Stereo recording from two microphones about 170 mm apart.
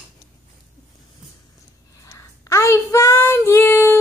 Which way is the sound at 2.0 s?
20° left (ahead or behind).